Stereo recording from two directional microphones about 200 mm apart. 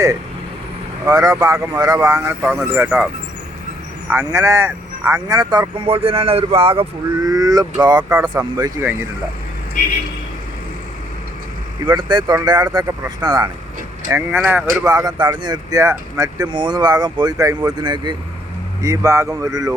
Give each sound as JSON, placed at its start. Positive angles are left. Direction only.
{"t": 1.0, "sound": "speech", "side_deg": -15}
{"t": 4.1, "sound": "speech", "side_deg": -15}
{"t": 11.9, "sound": "speech", "side_deg": -20}
{"t": 14.1, "sound": "speech", "side_deg": -10}